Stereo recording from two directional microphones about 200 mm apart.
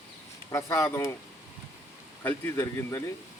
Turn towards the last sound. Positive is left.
turn(degrees=10)  # may be behind; listen again after turning